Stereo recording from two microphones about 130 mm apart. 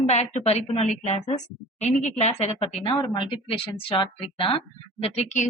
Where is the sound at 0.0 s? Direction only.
60° left (ahead or behind).